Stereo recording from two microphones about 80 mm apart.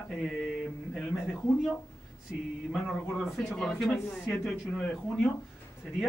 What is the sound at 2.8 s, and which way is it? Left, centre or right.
A man's voice, centre.